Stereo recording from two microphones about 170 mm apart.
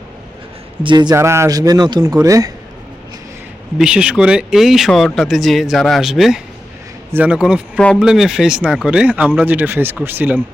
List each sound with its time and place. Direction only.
0.8 s a man's voice: 25° right (ahead or behind)
3.8 s speech: 5° right (ahead or behind)
7.8 s speech: 5° left (ahead or behind); by 10.4 s 10° right (ahead or behind)